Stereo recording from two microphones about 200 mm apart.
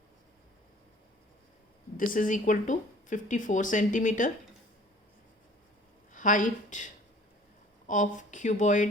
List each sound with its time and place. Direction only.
2.0 s speech: 40° left (ahead or behind)
6.1 s speech: 40° left (ahead or behind)